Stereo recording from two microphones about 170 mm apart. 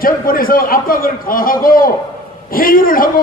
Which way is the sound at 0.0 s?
60° left (ahead or behind).